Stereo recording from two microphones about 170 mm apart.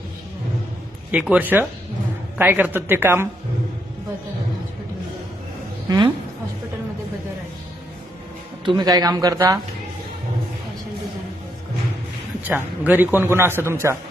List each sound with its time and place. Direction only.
1.3 s a man's voice: 10° right (ahead or behind)
5.9 s speech: 20° right (ahead or behind)
8.6 s speech: 25° right (ahead or behind)
12.5 s a man's voice: 10° right (ahead or behind)